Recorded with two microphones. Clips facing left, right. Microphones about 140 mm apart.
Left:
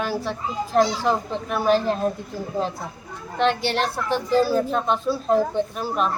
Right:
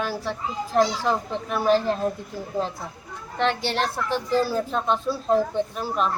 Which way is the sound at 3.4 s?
15° left (ahead or behind).